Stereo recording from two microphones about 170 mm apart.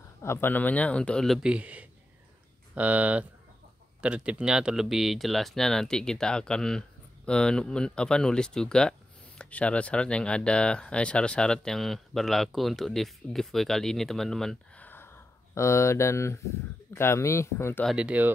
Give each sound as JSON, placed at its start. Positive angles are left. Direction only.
{"t": 0.2, "sound": "speech", "side_deg": 15}
{"t": 17.8, "sound": "speech", "side_deg": -5}